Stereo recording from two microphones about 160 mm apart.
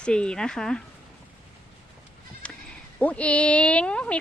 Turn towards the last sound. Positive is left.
turn(degrees=5)  # may be behind; listen again after turning